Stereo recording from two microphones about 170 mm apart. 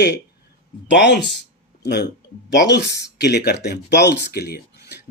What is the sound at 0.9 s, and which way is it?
Speech, 90° left.